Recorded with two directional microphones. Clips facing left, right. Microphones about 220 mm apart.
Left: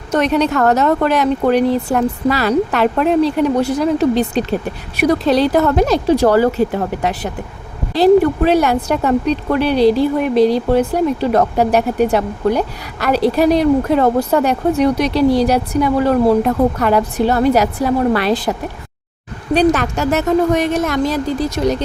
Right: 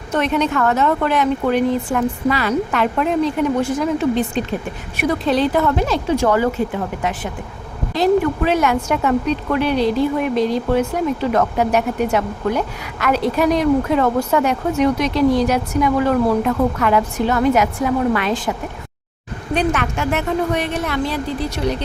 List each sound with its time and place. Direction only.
0.1 s speech: 40° left (ahead or behind)
19.5 s a woman's voice: 35° left (ahead or behind)